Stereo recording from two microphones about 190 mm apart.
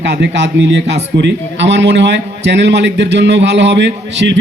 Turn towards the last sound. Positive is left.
turn(degrees=-65)  # may be behind; listen again after turning